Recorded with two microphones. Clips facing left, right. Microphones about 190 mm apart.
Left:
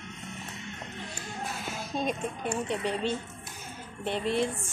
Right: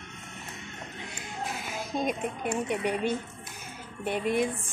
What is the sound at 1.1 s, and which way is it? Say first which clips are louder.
Music: right 2 dB; 10° right (ahead or behind).